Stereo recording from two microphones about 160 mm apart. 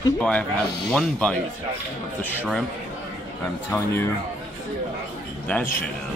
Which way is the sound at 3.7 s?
15° left (ahead or behind).